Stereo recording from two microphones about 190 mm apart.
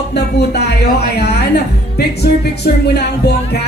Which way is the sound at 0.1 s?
60° left (ahead or behind).